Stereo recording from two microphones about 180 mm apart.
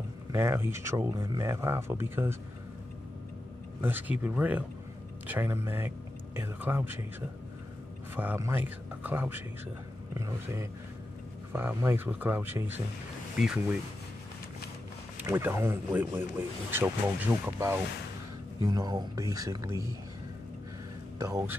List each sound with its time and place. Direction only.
0.3 s speech: 15° right (ahead or behind)
3.8 s speech: 10° right (ahead or behind)
15.1 s speech: 15° right (ahead or behind)
21.2 s speech: 20° right (ahead or behind)